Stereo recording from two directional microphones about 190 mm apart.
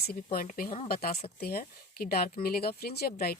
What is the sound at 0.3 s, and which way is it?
Speech, 50° left (ahead or behind).